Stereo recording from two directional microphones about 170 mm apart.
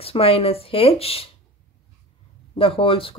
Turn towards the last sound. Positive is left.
turn(degrees=30)  # may be behind; listen again after turning